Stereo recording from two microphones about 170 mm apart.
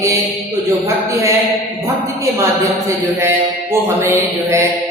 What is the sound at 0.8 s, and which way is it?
Mantra, 15° right (ahead or behind).